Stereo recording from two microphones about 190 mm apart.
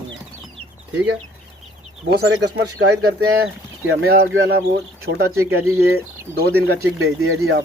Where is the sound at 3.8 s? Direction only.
90° right.